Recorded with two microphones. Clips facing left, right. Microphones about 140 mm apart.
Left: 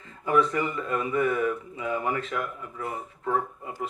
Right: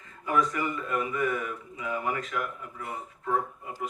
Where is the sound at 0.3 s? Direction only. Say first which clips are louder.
Left 3 dB; 30° left (ahead or behind).